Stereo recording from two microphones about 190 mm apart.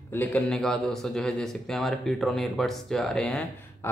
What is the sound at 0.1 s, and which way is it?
A man's voice, 10° left (ahead or behind).